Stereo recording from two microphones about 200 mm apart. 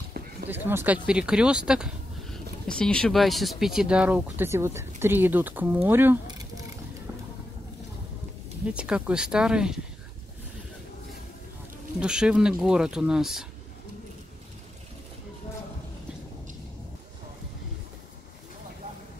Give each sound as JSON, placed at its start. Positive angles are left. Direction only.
{"t": 0.2, "sound": "a sound", "side_deg": -50}
{"t": 0.5, "sound": "speech", "side_deg": -10}
{"t": 8.7, "sound": "speech", "side_deg": -5}
{"t": 12.0, "sound": "speech", "side_deg": -5}